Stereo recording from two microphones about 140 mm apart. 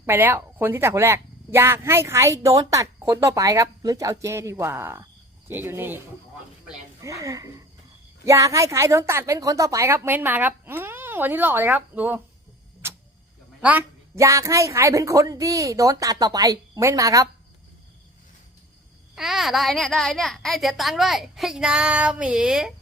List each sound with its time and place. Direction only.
0.0 s a woman's voice: 15° right (ahead or behind)
7.0 s a woman's voice: 25° right (ahead or behind)
12.8 s vehicle: 15° right (ahead or behind)
13.6 s speech: 10° right (ahead or behind)
14.2 s speech: 20° right (ahead or behind)
19.1 s a child's voice: centre (ahead or behind)